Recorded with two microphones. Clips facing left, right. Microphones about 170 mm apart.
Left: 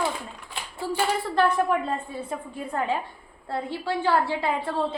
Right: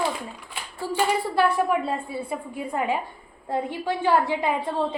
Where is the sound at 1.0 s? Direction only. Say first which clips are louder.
Right 2 dB; 10° right (ahead or behind).